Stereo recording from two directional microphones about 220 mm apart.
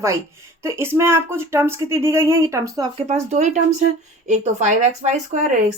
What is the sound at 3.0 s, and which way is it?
A woman's voice, 30° right (ahead or behind).